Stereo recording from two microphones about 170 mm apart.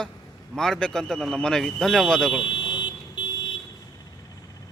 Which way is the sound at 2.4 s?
30° left (ahead or behind).